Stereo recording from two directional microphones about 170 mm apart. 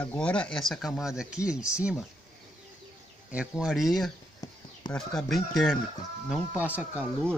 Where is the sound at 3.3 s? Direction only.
5° right (ahead or behind).